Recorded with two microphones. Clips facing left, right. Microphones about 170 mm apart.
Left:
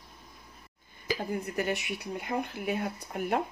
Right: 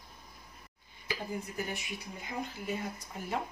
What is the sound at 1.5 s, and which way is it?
Speech, 70° left (ahead or behind).